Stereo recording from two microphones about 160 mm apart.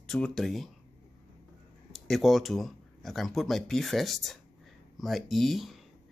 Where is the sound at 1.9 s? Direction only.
Centre (ahead or behind).